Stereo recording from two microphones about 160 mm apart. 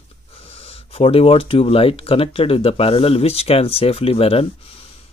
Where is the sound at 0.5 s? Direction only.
35° left (ahead or behind).